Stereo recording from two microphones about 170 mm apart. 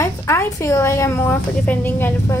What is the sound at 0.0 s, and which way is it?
A woman's voice, 15° left (ahead or behind).